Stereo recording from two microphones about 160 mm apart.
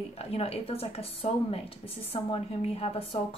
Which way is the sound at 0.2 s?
40° left (ahead or behind).